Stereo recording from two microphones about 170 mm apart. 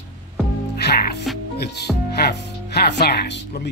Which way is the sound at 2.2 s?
70° left (ahead or behind).